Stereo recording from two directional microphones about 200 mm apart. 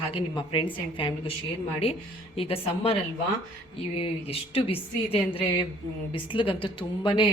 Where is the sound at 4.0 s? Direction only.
30° left (ahead or behind).